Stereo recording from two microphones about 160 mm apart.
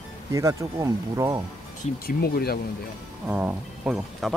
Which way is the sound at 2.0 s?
70° left (ahead or behind).